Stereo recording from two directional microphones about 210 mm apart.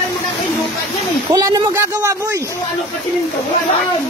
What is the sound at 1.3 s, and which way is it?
Speech, 15° right (ahead or behind).